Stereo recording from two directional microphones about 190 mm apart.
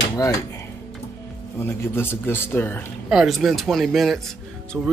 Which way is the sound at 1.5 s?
10° left (ahead or behind).